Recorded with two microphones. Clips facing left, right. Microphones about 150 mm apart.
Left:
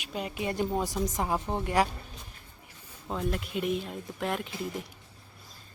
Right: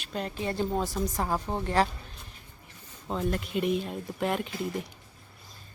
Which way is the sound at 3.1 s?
Centre (ahead or behind).